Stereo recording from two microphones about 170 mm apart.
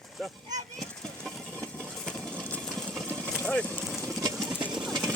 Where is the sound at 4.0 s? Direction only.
20° right (ahead or behind).